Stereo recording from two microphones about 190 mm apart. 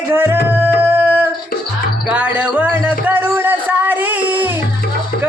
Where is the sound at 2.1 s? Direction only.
5° right (ahead or behind).